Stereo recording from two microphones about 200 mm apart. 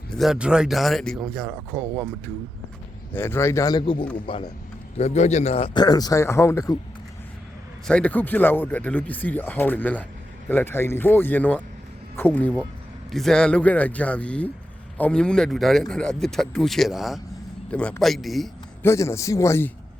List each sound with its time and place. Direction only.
0.1 s speech: centre (ahead or behind)
3.1 s a man's voice: 10° left (ahead or behind)
7.9 s speech: 5° left (ahead or behind)
18.8 s speech: 15° left (ahead or behind)